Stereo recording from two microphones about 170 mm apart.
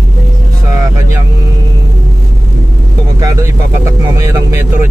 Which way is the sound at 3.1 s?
20° right (ahead or behind).